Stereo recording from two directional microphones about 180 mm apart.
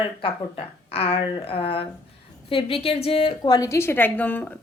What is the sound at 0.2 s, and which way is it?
A woman's voice, 30° left (ahead or behind).